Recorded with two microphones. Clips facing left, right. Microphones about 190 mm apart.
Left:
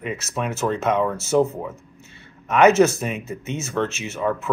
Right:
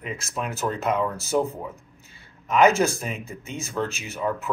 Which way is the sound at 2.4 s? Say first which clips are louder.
Left 4 dB; centre (ahead or behind).